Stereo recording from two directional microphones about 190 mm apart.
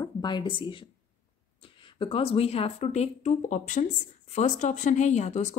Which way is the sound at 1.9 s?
30° left (ahead or behind).